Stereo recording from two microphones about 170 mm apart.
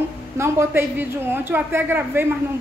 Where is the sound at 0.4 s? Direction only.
15° right (ahead or behind).